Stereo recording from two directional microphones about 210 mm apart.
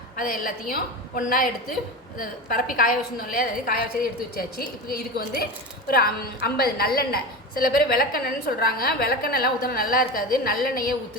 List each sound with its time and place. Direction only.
0.2 s a woman's voice: 40° left (ahead or behind)